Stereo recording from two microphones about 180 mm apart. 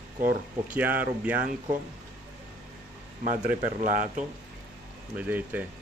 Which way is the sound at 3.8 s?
45° right (ahead or behind).